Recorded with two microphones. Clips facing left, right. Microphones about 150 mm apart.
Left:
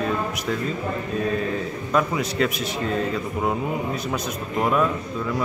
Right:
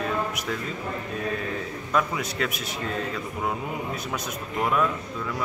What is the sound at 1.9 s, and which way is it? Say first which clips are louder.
Speech: left 4 dB; 5° left (ahead or behind).